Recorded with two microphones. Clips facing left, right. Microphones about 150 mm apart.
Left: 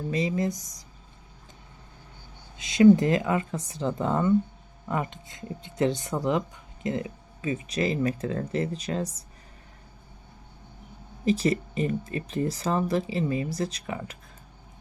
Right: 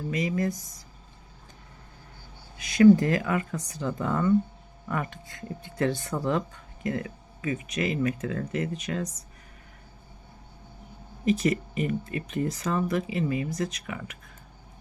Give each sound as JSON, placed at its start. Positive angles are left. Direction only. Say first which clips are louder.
{"t": 0.1, "sound": "speech", "louder": "left 1 dB", "side_deg": 25}
{"t": 2.6, "sound": "speech", "louder": "even", "side_deg": 20}
{"t": 11.3, "sound": "speech", "louder": "even", "side_deg": 30}